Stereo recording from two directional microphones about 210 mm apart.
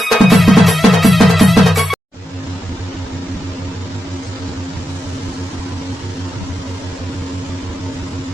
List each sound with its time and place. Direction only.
0.0 s music: centre (ahead or behind)